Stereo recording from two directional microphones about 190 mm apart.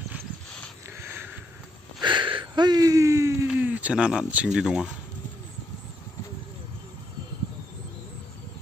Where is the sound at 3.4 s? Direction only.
5° right (ahead or behind).